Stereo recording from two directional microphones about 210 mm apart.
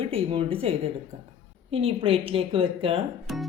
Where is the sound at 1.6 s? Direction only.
25° right (ahead or behind).